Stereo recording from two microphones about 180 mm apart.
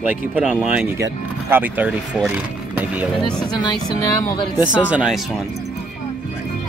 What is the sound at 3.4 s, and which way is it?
Speech, 25° left (ahead or behind).